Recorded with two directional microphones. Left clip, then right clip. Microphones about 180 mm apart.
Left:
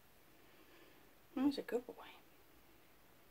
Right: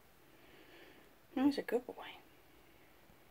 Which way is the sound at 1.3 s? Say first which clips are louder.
Right 4 dB; 20° right (ahead or behind).